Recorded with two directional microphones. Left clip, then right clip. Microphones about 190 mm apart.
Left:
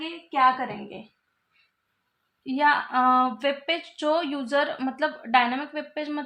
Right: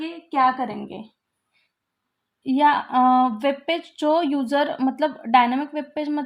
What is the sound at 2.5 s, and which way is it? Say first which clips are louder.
Speech: right 3 dB; 50° right (ahead or behind).